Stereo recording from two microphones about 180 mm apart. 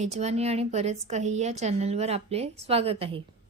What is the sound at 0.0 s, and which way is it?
A woman's voice, 40° right (ahead or behind).